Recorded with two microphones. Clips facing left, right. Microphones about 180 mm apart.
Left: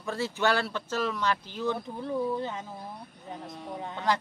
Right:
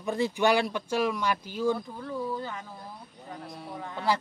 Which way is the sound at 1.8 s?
20° left (ahead or behind).